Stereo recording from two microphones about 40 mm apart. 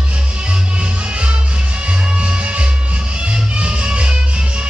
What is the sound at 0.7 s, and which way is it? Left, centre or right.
Music, right.